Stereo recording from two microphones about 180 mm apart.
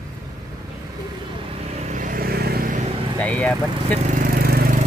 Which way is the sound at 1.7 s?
40° right (ahead or behind).